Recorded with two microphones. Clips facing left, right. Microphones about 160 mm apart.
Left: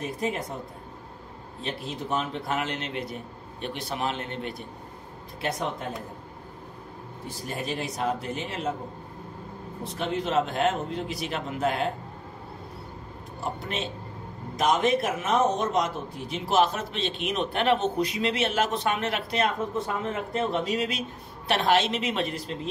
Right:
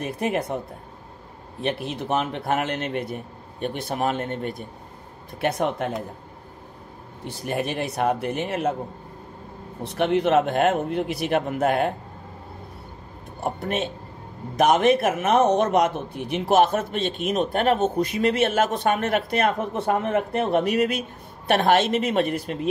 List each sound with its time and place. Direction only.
0.0 s speech: 70° right (ahead or behind)
1.6 s a man's voice: 65° right (ahead or behind); by 4.6 s 50° right (ahead or behind)
5.4 s speech: 60° right (ahead or behind)
7.2 s speech: 65° right (ahead or behind)
9.9 s speech: 70° right (ahead or behind)
13.4 s a man's voice: 55° right (ahead or behind)